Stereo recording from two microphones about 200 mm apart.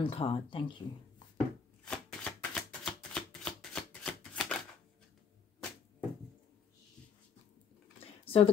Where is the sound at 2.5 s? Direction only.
5° left (ahead or behind).